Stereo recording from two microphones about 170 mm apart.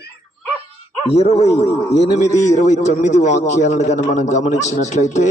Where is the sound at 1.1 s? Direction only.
40° left (ahead or behind).